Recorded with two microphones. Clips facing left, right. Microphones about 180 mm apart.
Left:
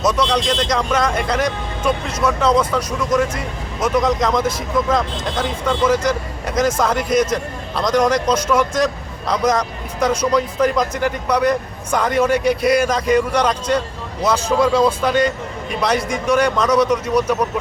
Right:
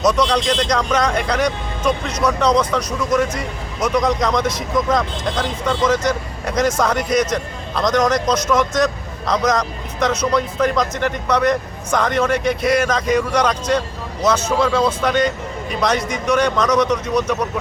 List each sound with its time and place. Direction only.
0.1 s speech: centre (ahead or behind)